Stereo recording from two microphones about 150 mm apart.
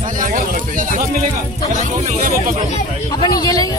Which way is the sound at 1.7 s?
55° right (ahead or behind).